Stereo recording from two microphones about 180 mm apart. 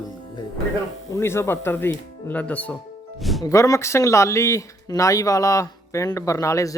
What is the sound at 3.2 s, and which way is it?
Music, centre (ahead or behind).